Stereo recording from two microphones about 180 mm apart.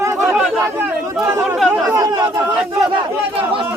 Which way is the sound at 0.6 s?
10° right (ahead or behind).